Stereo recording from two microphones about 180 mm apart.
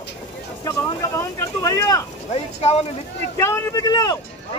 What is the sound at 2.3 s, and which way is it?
Speech, 35° left (ahead or behind).